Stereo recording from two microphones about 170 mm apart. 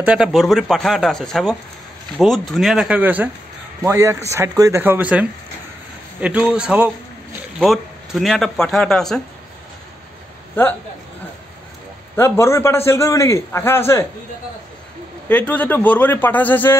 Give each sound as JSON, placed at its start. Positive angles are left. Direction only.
{"t": 0.0, "sound": "a man's voice", "side_deg": -5}
{"t": 12.2, "sound": "a man's voice", "side_deg": 15}
{"t": 15.2, "sound": "a man's voice", "side_deg": 10}